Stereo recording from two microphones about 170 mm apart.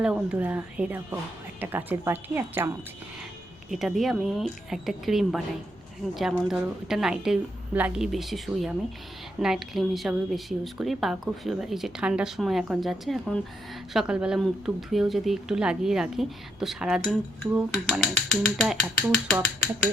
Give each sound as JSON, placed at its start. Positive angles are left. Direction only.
{"t": 0.0, "sound": "speech", "side_deg": -5}
{"t": 3.7, "sound": "speech", "side_deg": 0}